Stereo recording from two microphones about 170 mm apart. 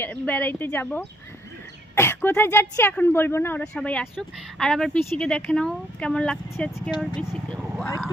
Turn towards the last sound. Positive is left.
turn(degrees=5)  # may be behind; listen again after turning